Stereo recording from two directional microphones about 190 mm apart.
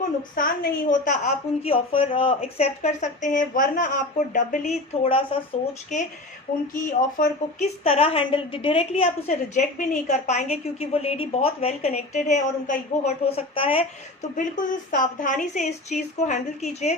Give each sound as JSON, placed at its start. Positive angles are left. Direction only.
{"t": 0.3, "sound": "a woman's voice", "side_deg": 45}
{"t": 7.9, "sound": "a woman's voice", "side_deg": 30}
{"t": 14.3, "sound": "a woman's voice", "side_deg": 45}